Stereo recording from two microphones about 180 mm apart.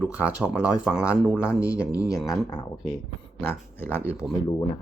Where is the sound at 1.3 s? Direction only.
15° left (ahead or behind).